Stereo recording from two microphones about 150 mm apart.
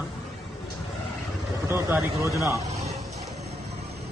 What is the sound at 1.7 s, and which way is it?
Speech, 20° right (ahead or behind).